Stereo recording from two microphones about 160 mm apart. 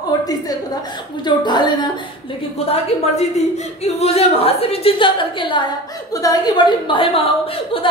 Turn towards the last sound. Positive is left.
turn(degrees=35)  # may be behind; listen again after turning